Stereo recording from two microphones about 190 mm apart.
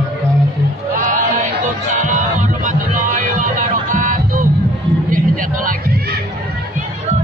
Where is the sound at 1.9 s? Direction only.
40° right (ahead or behind).